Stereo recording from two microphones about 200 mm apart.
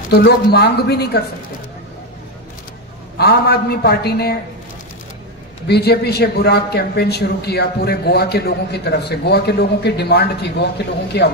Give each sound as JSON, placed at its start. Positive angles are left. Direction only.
{"t": 0.1, "sound": "a man's voice", "side_deg": 55}
{"t": 3.2, "sound": "a man's voice", "side_deg": 55}
{"t": 5.7, "sound": "a man's voice", "side_deg": 55}